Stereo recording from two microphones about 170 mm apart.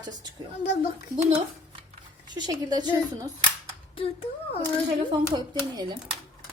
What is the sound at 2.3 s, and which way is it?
Speech, 25° right (ahead or behind).